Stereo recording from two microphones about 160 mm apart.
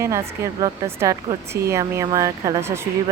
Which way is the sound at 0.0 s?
20° right (ahead or behind).